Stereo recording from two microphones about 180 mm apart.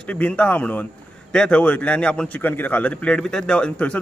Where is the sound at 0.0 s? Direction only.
5° left (ahead or behind).